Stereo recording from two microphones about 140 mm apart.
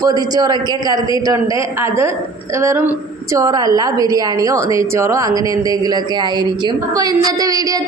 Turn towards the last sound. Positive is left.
turn(degrees=-25)  # may be behind; listen again after turning